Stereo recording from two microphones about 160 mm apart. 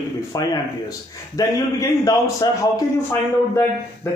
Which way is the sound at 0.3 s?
25° left (ahead or behind).